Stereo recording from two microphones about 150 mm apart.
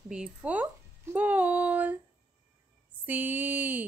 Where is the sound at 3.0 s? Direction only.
15° right (ahead or behind).